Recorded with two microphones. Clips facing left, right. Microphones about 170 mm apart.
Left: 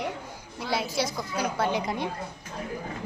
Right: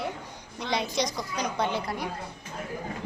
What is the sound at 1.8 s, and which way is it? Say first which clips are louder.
Speech: left 3 dB; 20° left (ahead or behind).